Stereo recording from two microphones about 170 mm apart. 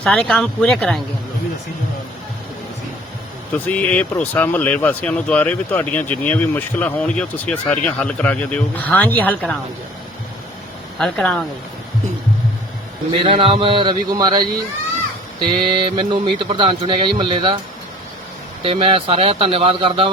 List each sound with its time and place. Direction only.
0.0 s speech: 5° left (ahead or behind)
3.7 s speech: 10° left (ahead or behind)
10.9 s speech: 5° left (ahead or behind)
13.1 s a man's voice: 30° right (ahead or behind)
18.6 s speech: 35° right (ahead or behind)